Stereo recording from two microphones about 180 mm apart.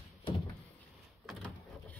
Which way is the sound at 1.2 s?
5° left (ahead or behind).